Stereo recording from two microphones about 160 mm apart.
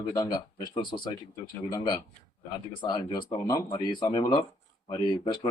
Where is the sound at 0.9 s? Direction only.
35° left (ahead or behind).